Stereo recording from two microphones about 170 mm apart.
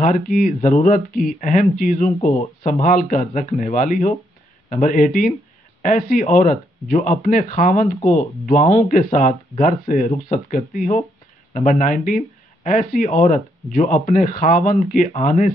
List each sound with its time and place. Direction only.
0.0 s speech: 50° left (ahead or behind)
2.0 s speech: 40° left (ahead or behind)
2.6 s speech: 55° left (ahead or behind)